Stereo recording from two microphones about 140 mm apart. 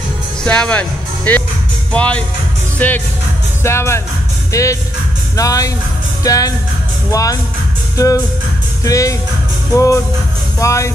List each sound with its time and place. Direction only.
0.4 s speech: 5° left (ahead or behind); by 7.3 s 25° left (ahead or behind)
8.8 s speech: 25° left (ahead or behind)